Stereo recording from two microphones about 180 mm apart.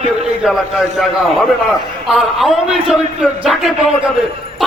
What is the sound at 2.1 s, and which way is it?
A man's voice, centre (ahead or behind).